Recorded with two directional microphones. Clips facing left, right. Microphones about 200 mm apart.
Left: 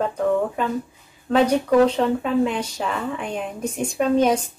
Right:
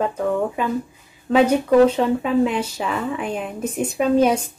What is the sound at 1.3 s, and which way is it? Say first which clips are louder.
A woman's voice: right 2 dB; 5° right (ahead or behind).